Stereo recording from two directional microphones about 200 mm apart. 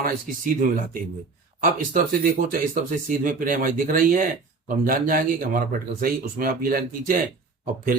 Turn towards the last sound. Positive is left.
turn(degrees=-45)  # may be behind; listen again after turning